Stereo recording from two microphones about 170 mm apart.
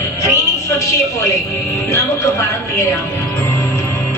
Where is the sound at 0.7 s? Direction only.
20° left (ahead or behind).